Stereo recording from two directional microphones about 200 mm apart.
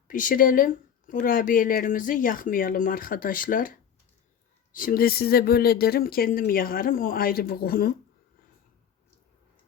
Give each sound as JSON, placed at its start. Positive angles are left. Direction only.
{"t": 0.1, "sound": "speech", "side_deg": 40}